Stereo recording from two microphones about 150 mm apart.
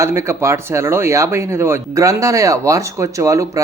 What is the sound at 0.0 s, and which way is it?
Speech, 20° right (ahead or behind).